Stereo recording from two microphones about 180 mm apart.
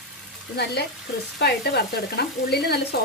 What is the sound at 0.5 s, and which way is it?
Frying, 65° left (ahead or behind).